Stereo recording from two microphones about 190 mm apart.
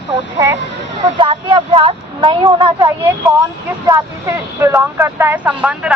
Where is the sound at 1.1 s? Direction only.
25° right (ahead or behind).